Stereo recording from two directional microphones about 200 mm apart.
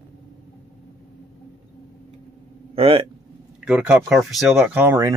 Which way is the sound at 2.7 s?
30° right (ahead or behind).